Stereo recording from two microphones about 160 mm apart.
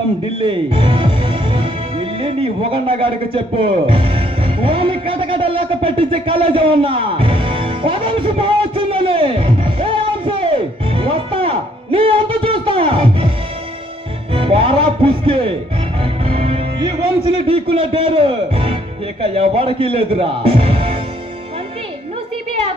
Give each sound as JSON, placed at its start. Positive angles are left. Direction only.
{"t": 0.4, "sound": "music", "side_deg": -30}
{"t": 14.3, "sound": "speech", "side_deg": -35}
{"t": 16.0, "sound": "music", "side_deg": -40}
{"t": 17.5, "sound": "speech", "side_deg": -35}